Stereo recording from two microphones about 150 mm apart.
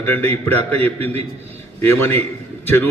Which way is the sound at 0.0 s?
15° left (ahead or behind).